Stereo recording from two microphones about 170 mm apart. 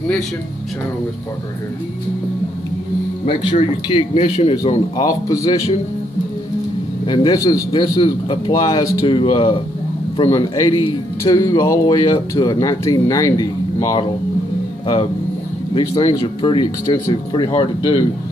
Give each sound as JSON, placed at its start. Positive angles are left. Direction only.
{"t": 3.3, "sound": "a man's voice", "side_deg": 30}
{"t": 5.0, "sound": "speech", "side_deg": 20}
{"t": 7.1, "sound": "speech", "side_deg": 25}
{"t": 15.7, "sound": "a man's voice", "side_deg": 30}